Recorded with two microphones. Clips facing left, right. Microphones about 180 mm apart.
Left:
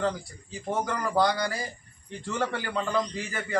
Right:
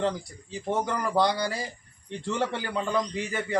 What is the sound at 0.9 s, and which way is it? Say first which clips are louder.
A man's voice: left 1 dB; 20° right (ahead or behind).